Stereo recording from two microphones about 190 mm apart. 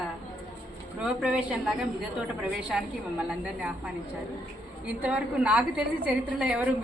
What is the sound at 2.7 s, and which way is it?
Speech, 5° right (ahead or behind).